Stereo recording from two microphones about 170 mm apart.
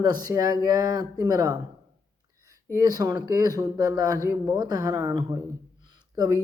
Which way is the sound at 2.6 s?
20° right (ahead or behind).